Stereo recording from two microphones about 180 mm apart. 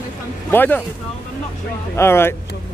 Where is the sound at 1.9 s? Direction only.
15° left (ahead or behind).